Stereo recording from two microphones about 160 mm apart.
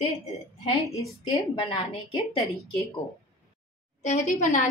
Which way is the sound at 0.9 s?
35° left (ahead or behind).